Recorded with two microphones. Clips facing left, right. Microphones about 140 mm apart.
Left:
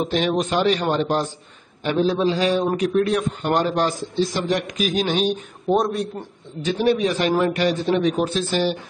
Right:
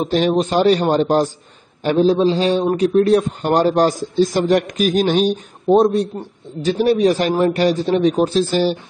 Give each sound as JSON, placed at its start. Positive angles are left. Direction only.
{"t": 0.0, "sound": "a man's voice", "side_deg": -35}